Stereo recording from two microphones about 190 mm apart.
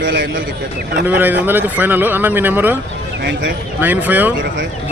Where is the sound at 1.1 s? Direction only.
10° right (ahead or behind).